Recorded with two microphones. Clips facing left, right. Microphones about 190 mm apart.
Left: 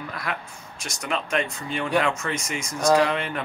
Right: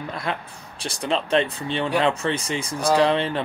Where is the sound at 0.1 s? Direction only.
25° right (ahead or behind).